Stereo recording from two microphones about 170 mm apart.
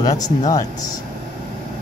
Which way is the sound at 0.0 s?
20° left (ahead or behind).